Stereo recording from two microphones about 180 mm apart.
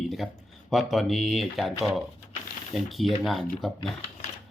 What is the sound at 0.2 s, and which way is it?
Speech, 5° left (ahead or behind).